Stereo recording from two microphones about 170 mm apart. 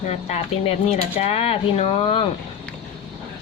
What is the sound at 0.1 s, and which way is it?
Speech, 40° left (ahead or behind).